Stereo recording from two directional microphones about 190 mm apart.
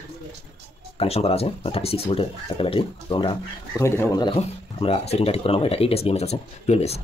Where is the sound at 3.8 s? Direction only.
15° left (ahead or behind).